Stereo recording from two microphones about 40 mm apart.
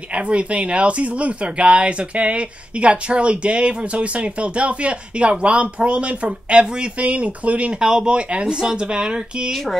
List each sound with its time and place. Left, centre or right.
0.1 s speech: right
7.0 s speech: right
7.8 s speech: centre